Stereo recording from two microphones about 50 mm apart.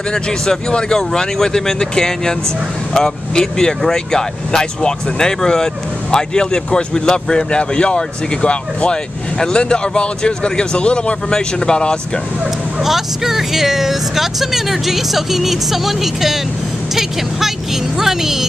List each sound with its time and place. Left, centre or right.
0.1 s speech: centre
12.8 s speech: centre
17.9 s speech: centre